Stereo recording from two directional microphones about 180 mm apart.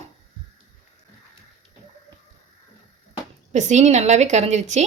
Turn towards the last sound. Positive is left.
turn(degrees=-40)  # may be behind; listen again after turning